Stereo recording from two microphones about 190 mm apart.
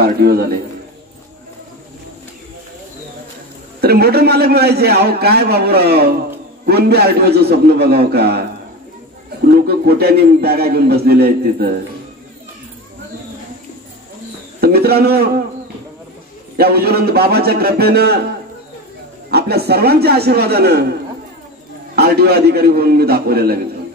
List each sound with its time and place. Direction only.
0.0 s a man's voice: 55° right (ahead or behind)
3.8 s a man's voice: 55° right (ahead or behind)
9.7 s a man's voice: 55° right (ahead or behind)
14.6 s a man's voice: 55° right (ahead or behind)
16.5 s a man's voice: 55° right (ahead or behind)
19.3 s a man's voice: 55° right (ahead or behind)
21.9 s a man's voice: 55° right (ahead or behind)